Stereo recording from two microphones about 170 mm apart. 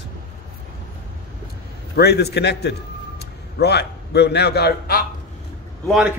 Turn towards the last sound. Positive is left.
turn(degrees=-5)  # may be behind; listen again after turning